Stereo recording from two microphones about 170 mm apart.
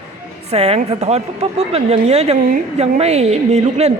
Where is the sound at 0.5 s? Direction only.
35° right (ahead or behind).